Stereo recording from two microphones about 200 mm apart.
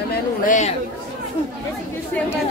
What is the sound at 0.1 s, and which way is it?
Chatter, 45° left (ahead or behind).